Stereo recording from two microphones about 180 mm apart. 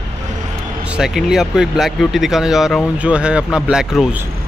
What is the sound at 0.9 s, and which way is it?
Speech, centre (ahead or behind).